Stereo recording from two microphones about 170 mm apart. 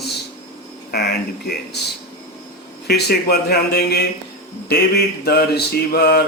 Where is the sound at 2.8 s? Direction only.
70° left (ahead or behind).